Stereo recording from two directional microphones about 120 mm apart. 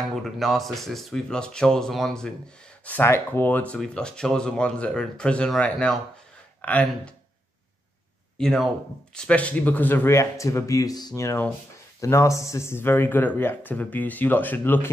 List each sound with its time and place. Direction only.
0.2 s speech: centre (ahead or behind)
2.8 s speech: 15° left (ahead or behind)
8.4 s speech: 5° left (ahead or behind)